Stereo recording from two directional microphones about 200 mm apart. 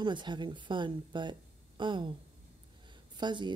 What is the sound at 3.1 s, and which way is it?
Speech, 20° right (ahead or behind).